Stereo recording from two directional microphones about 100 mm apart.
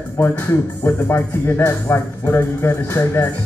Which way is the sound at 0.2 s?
20° left (ahead or behind).